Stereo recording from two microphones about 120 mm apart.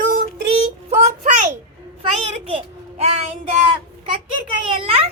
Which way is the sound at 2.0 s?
50° right (ahead or behind).